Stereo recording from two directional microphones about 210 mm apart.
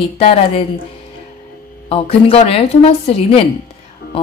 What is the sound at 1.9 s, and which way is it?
Speech, 30° left (ahead or behind).